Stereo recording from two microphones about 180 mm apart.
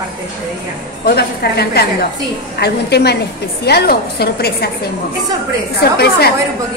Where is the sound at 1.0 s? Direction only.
60° left (ahead or behind).